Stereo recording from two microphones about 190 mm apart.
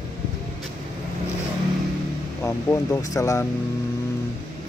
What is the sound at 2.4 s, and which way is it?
Speech, 15° left (ahead or behind).